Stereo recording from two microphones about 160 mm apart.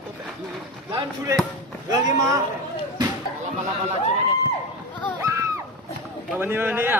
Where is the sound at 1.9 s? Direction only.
20° right (ahead or behind).